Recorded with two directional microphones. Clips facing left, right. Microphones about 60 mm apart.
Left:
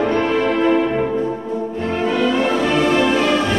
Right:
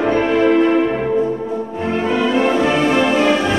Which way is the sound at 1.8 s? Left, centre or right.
Centre.